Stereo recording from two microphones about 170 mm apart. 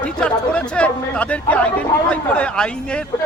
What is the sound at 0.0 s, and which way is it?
A man's voice, 5° left (ahead or behind).